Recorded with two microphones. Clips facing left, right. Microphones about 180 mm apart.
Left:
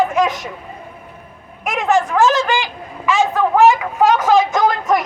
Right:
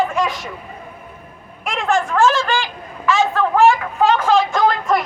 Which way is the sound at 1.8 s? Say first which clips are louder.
Left 2 dB; 15° left (ahead or behind).